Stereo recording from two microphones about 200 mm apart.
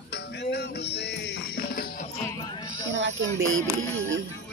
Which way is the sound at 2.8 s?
70° right (ahead or behind).